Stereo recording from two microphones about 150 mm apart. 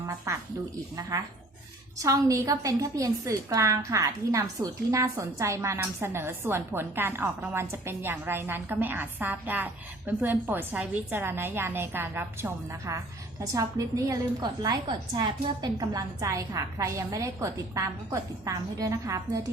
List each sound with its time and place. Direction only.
2.0 s a woman's voice: 20° right (ahead or behind)